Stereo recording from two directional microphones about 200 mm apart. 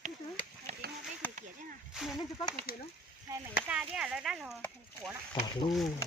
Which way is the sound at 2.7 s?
50° left (ahead or behind).